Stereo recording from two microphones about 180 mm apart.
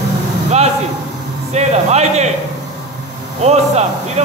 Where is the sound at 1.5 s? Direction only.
40° right (ahead or behind).